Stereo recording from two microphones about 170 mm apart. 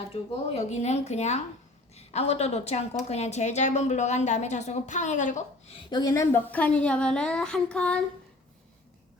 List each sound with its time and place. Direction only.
0.1 s a woman's voice: 40° left (ahead or behind)
5.9 s a woman's voice: 20° left (ahead or behind)